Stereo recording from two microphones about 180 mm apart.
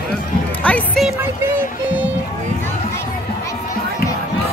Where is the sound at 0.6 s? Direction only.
5° left (ahead or behind).